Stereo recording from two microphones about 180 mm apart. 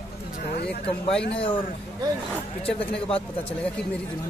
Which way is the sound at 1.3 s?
30° left (ahead or behind).